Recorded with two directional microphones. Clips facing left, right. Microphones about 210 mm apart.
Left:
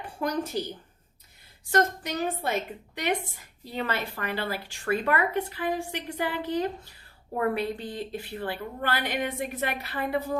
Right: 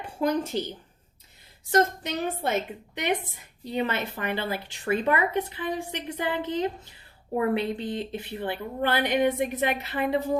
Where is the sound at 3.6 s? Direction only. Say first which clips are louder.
Right 3 dB; 20° right (ahead or behind).